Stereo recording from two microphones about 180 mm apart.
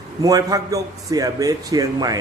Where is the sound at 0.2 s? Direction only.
20° right (ahead or behind).